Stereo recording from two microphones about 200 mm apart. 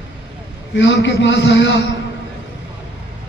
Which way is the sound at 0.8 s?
65° left (ahead or behind).